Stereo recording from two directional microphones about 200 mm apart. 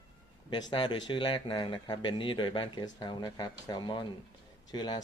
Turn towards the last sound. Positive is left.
turn(degrees=20)  # may be behind; listen again after turning